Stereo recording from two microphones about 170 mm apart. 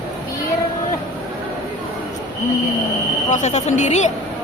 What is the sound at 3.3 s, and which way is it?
Speech, 45° left (ahead or behind).